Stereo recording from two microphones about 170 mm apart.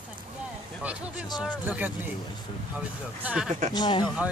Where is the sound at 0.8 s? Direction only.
5° right (ahead or behind).